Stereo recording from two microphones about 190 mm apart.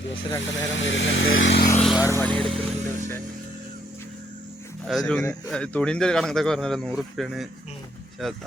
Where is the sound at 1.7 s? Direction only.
Centre (ahead or behind).